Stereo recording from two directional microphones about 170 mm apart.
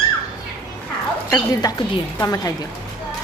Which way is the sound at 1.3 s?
25° left (ahead or behind).